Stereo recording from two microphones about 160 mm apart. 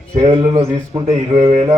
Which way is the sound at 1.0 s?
40° right (ahead or behind).